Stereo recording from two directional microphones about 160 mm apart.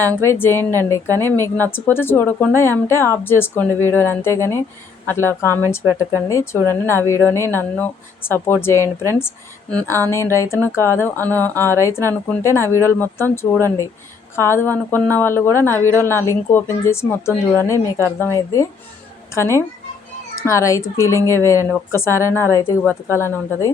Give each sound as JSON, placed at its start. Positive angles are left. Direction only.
{"t": 0.2, "sound": "a woman's voice", "side_deg": 15}
{"t": 9.6, "sound": "a woman's voice", "side_deg": 5}
{"t": 10.1, "sound": "a woman's voice", "side_deg": 15}